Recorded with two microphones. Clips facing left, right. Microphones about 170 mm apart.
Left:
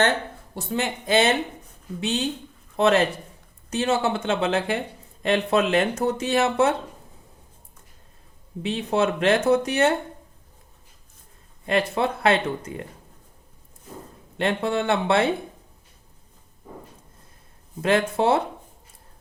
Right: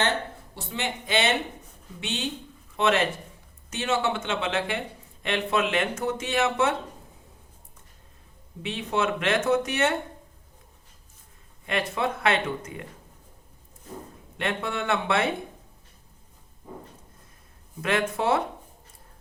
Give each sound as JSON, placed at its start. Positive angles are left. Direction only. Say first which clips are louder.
{"t": 0.5, "sound": "speech", "louder": "left 6 dB", "side_deg": 45}
{"t": 8.6, "sound": "speech", "louder": "left 4 dB", "side_deg": 35}
{"t": 11.6, "sound": "speech", "louder": "left 5 dB", "side_deg": 35}
{"t": 14.3, "sound": "speech", "louder": "left 6 dB", "side_deg": 30}
{"t": 17.8, "sound": "speech", "louder": "left 4 dB", "side_deg": 30}